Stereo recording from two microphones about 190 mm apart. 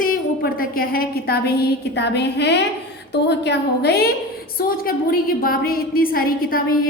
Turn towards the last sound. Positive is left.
turn(degrees=50)  # may be behind; listen again after turning